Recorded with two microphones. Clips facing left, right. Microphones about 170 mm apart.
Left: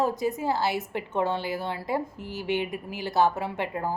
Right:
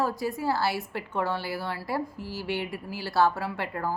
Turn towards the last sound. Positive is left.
turn(degrees=20)  # may be behind; listen again after turning